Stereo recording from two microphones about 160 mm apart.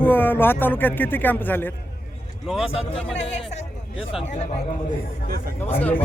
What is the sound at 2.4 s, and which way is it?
Speech, 5° right (ahead or behind).